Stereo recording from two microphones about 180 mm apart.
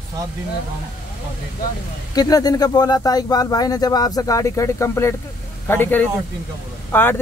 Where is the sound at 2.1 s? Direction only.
20° left (ahead or behind).